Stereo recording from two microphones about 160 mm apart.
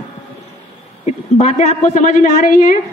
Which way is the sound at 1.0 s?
45° left (ahead or behind).